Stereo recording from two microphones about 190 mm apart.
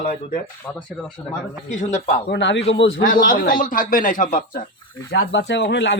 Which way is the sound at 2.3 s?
70° left (ahead or behind).